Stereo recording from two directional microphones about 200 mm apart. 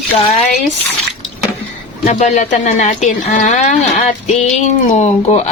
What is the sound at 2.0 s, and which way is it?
Speech, 35° left (ahead or behind).